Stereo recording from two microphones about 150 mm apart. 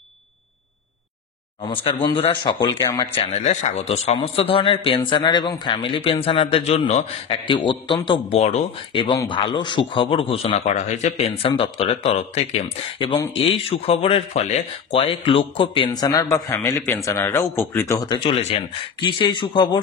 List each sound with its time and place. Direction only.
1.7 s a man's voice: 35° left (ahead or behind)
2.8 s speech: 15° left (ahead or behind)
3.2 s a man's voice: 45° left (ahead or behind)
8.4 s speech: 45° left (ahead or behind)
8.9 s a man's voice: 35° left (ahead or behind)
10.5 s a man's voice: 50° left (ahead or behind); by 18.0 s 20° left (ahead or behind)
18.0 s a man's voice: 30° left (ahead or behind)